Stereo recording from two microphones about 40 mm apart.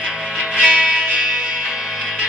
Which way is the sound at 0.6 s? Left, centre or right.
Right.